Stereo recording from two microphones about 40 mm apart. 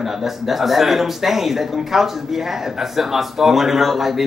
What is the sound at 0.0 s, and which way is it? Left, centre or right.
Speech, centre.